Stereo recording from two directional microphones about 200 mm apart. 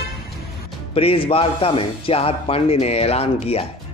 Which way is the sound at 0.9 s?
30° left (ahead or behind).